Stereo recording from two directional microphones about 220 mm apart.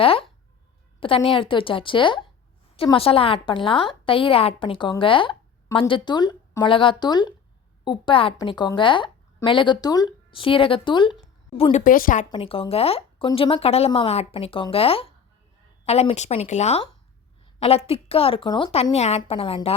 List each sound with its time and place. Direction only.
0.0 s a woman's voice: 25° left (ahead or behind)
11.8 s a woman's voice: 40° left (ahead or behind)
12.3 s a woman's voice: 25° left (ahead or behind)